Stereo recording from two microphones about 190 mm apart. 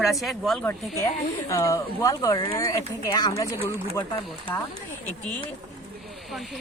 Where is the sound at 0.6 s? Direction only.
15° left (ahead or behind).